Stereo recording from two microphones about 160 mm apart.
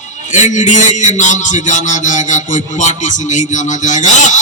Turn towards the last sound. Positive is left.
turn(degrees=50)  # may be behind; listen again after turning